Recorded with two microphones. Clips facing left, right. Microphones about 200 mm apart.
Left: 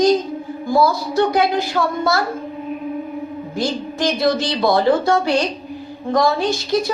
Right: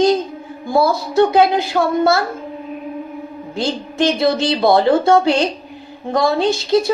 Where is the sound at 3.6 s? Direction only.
25° right (ahead or behind).